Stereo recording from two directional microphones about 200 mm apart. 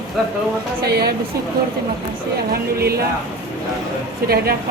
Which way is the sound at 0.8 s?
50° right (ahead or behind).